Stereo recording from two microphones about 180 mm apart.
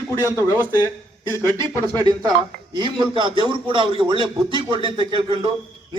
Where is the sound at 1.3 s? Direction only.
20° right (ahead or behind).